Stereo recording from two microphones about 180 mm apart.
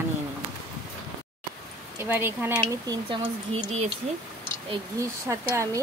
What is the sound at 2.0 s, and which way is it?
Speech, 10° right (ahead or behind).